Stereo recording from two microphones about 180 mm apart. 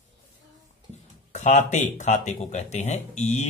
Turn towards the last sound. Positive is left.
turn(degrees=40)  # may be behind; listen again after turning